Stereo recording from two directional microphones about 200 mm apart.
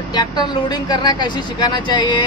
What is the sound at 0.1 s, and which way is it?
Speech, 20° left (ahead or behind).